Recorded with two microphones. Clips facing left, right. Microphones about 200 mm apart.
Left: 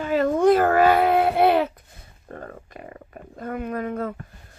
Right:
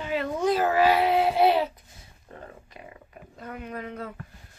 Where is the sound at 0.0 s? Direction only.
45° left (ahead or behind).